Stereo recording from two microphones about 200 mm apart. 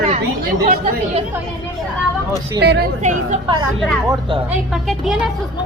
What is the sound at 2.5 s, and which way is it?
Speech, 55° right (ahead or behind).